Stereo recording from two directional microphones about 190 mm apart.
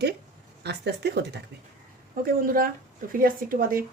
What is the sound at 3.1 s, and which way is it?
Speech, 50° right (ahead or behind).